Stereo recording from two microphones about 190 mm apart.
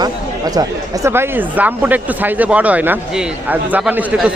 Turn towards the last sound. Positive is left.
turn(degrees=-5)  # may be behind; listen again after turning